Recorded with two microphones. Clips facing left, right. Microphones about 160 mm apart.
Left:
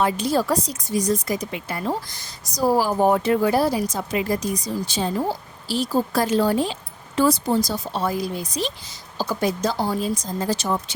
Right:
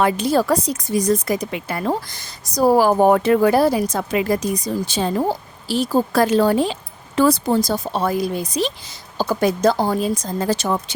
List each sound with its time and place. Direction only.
0.0 s a woman's voice: 60° right (ahead or behind)